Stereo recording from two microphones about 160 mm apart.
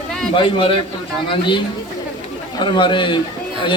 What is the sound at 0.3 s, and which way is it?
A man's voice, 30° left (ahead or behind).